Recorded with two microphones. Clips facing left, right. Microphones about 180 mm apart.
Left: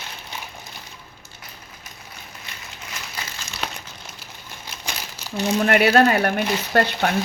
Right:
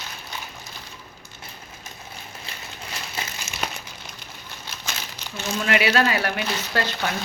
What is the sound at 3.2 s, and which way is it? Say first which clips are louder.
Crumpling: right 3 dB; 25° right (ahead or behind).